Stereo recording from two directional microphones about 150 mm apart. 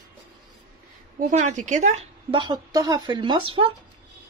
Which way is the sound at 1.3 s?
55° right (ahead or behind).